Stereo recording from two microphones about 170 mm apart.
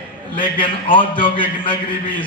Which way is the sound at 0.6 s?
30° left (ahead or behind).